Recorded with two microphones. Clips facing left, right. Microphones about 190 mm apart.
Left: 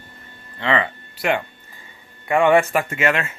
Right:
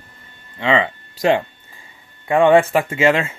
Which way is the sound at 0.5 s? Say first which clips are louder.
Right 3 dB; 15° right (ahead or behind).